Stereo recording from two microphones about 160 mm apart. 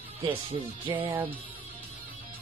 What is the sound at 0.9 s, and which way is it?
Music, 30° right (ahead or behind).